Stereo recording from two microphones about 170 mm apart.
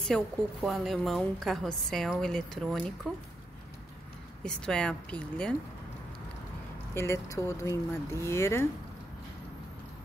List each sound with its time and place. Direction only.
0.0 s a woman's voice: centre (ahead or behind)
4.4 s a woman's voice: 5° left (ahead or behind)
6.9 s speech: 15° left (ahead or behind)